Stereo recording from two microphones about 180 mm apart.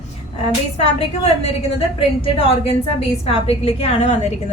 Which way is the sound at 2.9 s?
35° left (ahead or behind).